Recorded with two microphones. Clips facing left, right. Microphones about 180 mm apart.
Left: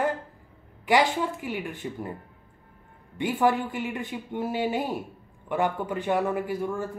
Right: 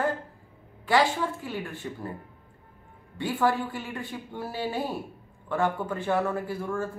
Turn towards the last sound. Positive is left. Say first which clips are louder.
# left 2 dB
turn(degrees=15)  # may be behind; listen again after turning